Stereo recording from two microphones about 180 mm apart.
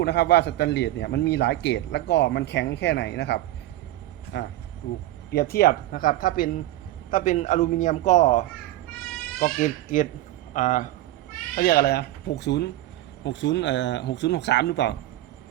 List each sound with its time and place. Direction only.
0.0 s a man's voice: 65° left (ahead or behind)
5.3 s a man's voice: 60° left (ahead or behind)
11.5 s speech: 55° left (ahead or behind)
13.2 s a man's voice: 80° left